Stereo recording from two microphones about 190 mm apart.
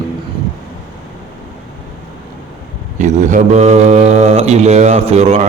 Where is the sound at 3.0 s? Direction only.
40° right (ahead or behind).